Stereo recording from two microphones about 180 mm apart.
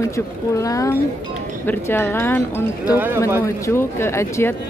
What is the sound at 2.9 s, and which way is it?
Speech, 10° right (ahead or behind).